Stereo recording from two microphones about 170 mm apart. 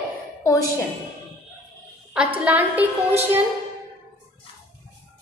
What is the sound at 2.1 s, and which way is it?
A woman's voice, 10° right (ahead or behind).